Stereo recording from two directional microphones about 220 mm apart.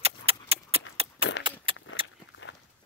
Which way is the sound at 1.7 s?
25° right (ahead or behind).